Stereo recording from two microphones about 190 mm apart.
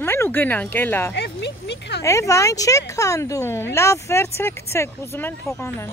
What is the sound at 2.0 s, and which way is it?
Speech, 15° left (ahead or behind).